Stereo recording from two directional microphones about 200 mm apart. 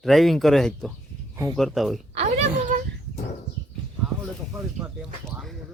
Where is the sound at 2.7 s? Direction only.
40° right (ahead or behind).